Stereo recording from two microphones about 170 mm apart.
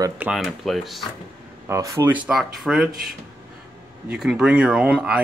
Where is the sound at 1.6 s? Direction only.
20° right (ahead or behind).